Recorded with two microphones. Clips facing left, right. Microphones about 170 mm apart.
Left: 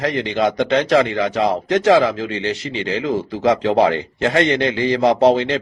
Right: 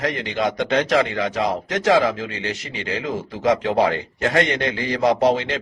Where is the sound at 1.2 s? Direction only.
30° left (ahead or behind).